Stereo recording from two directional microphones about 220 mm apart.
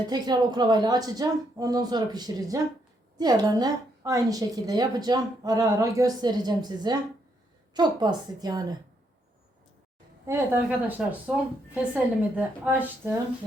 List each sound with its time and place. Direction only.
0.1 s a woman's voice: 20° right (ahead or behind)
10.2 s a woman's voice: 10° right (ahead or behind)